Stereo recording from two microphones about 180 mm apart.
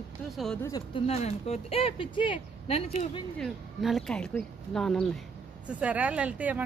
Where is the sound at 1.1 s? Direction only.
35° left (ahead or behind).